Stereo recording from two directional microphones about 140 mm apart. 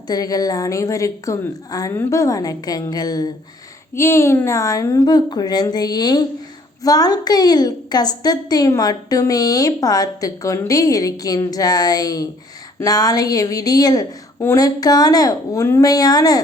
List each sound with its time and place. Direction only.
0.1 s a woman's voice: 25° left (ahead or behind)